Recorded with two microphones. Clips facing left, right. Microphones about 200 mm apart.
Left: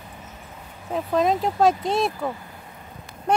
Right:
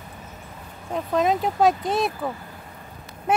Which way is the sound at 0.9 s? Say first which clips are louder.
Left 1 dB; centre (ahead or behind).